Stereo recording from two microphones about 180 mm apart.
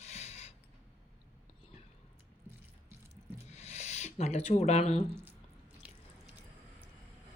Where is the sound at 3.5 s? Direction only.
35° left (ahead or behind).